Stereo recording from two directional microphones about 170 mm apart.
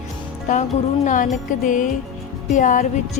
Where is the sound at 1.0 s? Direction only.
50° left (ahead or behind).